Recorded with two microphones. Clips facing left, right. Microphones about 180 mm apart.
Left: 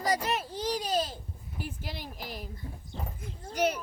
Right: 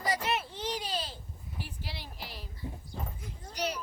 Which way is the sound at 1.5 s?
45° left (ahead or behind).